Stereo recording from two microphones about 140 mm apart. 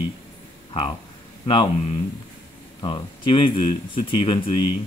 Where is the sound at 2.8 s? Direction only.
35° left (ahead or behind).